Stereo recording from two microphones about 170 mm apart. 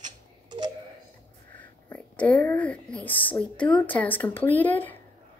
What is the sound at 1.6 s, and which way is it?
Speech, 10° left (ahead or behind).